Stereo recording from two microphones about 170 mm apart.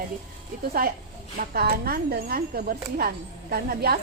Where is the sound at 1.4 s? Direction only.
65° right (ahead or behind).